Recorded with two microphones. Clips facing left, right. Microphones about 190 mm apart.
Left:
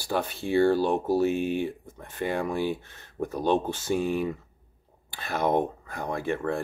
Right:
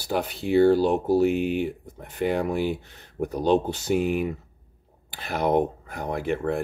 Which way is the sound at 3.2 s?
15° right (ahead or behind).